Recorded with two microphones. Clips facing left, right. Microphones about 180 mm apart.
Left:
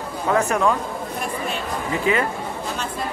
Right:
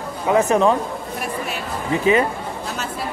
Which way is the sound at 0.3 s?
20° right (ahead or behind).